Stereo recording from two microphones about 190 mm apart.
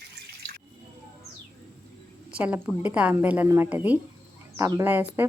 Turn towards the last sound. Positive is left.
turn(degrees=-10)  # may be behind; listen again after turning